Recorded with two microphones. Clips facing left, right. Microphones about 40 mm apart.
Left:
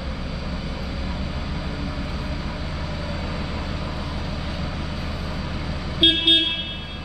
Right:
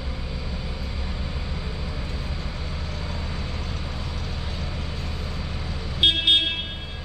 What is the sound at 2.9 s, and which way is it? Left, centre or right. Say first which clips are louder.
Vehicle: left 4 dB; centre.